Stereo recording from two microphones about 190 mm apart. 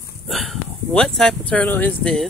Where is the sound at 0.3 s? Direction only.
Centre (ahead or behind).